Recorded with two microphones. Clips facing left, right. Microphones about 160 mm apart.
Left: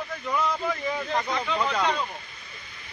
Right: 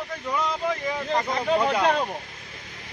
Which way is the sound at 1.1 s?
35° right (ahead or behind).